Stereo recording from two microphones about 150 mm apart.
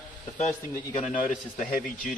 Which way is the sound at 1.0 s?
55° left (ahead or behind).